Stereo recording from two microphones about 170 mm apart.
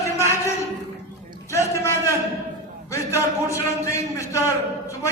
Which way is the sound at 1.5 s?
15° left (ahead or behind).